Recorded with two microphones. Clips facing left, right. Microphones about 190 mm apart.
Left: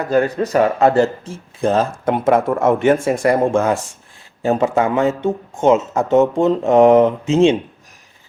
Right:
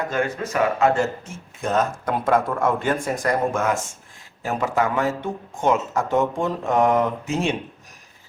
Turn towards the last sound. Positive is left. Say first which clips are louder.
# left 10 dB
turn(degrees=25)  # may be behind; listen again after turning